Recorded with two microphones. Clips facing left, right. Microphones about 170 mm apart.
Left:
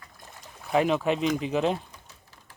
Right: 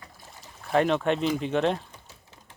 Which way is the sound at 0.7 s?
5° left (ahead or behind).